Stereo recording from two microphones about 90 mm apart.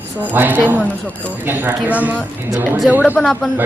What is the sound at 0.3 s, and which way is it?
Speech, 20° right (ahead or behind).